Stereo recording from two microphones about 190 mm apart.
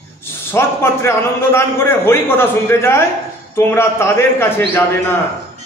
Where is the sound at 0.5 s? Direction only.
15° left (ahead or behind).